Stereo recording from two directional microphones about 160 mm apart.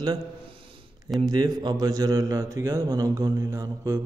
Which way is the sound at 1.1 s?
25° right (ahead or behind).